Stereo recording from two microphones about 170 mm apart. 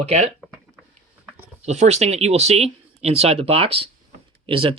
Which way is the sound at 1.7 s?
40° right (ahead or behind).